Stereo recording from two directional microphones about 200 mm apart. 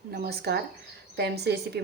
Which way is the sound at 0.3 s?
55° right (ahead or behind).